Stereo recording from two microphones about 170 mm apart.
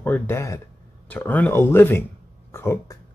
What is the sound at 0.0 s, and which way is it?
Speech, 10° left (ahead or behind).